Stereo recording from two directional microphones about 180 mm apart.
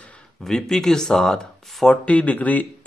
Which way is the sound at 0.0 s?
5° left (ahead or behind).